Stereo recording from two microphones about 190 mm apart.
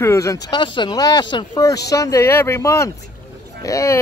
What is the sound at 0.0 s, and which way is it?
Speech, 15° left (ahead or behind).